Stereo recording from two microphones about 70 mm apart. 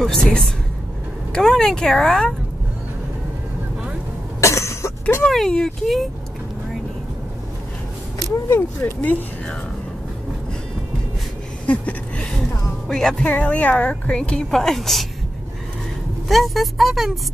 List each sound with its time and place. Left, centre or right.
0.0 s speech: centre
4.4 s cough: left
5.3 s speech: centre
8.5 s speech: left
11.6 s a sound: centre
12.8 s speech: centre
13.2 s speech: centre
14.5 s speech: centre
16.3 s speech: centre